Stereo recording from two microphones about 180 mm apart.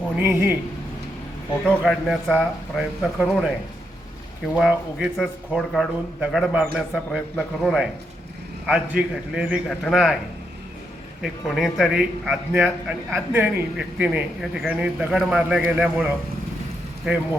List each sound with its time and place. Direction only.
0.2 s speech: 10° right (ahead or behind)
1.6 s speech: centre (ahead or behind)
4.5 s speech: centre (ahead or behind)
11.2 s speech: centre (ahead or behind)
13.3 s speech: 10° right (ahead or behind)
17.1 s speech: 5° right (ahead or behind)